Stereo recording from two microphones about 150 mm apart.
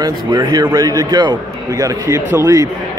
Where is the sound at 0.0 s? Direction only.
30° right (ahead or behind).